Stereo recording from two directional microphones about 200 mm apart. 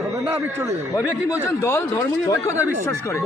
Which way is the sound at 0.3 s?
10° right (ahead or behind).